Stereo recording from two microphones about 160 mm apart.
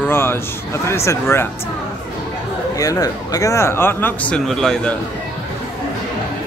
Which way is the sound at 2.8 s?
20° left (ahead or behind).